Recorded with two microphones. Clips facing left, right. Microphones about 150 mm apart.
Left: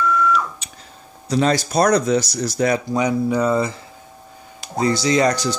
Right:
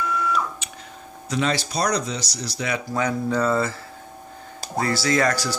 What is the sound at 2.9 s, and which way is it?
Speech, 15° left (ahead or behind).